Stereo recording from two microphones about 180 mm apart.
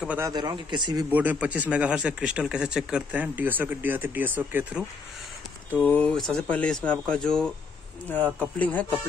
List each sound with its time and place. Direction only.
0.2 s speech: 20° right (ahead or behind)
1.1 s speech: 10° right (ahead or behind)
5.7 s speech: 10° left (ahead or behind)